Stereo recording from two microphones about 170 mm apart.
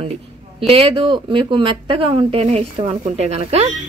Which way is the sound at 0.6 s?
35° right (ahead or behind).